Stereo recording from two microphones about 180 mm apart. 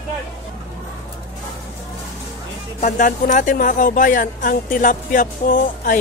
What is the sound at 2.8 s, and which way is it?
Speech, 45° left (ahead or behind).